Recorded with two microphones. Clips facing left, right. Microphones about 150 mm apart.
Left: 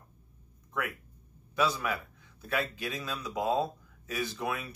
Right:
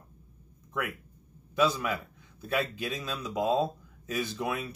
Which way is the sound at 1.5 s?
20° right (ahead or behind).